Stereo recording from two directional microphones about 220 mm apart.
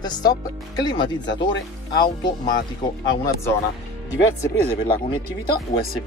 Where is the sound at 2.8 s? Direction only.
20° left (ahead or behind).